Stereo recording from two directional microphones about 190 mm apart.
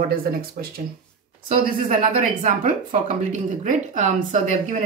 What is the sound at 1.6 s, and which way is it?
Speech, 40° right (ahead or behind).